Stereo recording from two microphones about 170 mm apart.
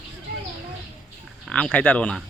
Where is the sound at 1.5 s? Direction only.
5° left (ahead or behind).